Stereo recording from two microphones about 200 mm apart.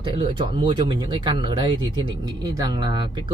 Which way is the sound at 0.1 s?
25° right (ahead or behind).